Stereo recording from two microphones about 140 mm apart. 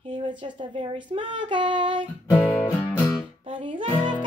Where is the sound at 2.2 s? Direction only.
20° left (ahead or behind).